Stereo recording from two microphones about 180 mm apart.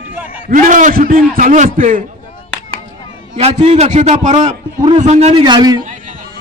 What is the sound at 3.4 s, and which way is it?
A man's voice, 35° right (ahead or behind).